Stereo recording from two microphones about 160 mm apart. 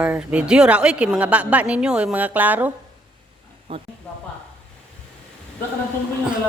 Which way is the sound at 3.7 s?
35° right (ahead or behind).